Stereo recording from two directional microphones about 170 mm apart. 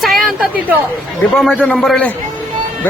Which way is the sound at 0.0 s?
Centre (ahead or behind).